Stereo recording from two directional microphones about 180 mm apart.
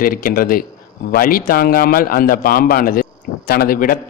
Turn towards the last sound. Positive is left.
turn(degrees=55)  # may be behind; listen again after turning